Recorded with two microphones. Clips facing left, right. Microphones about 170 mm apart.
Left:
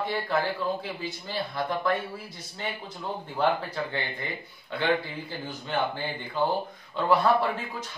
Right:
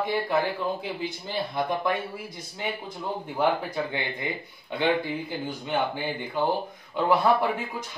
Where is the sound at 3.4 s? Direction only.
10° right (ahead or behind).